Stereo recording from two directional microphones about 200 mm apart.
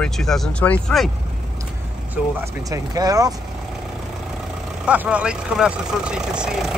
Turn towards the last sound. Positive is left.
turn(degrees=-5)  # may be behind; listen again after turning